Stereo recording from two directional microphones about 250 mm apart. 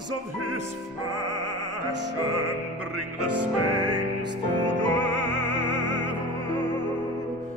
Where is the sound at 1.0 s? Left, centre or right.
Right.